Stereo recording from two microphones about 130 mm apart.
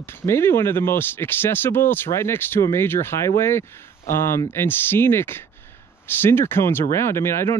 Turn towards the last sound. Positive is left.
turn(degrees=20)  # may be behind; listen again after turning